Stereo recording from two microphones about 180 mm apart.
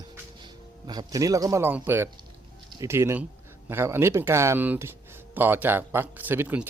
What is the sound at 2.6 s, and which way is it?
Speech, 20° right (ahead or behind).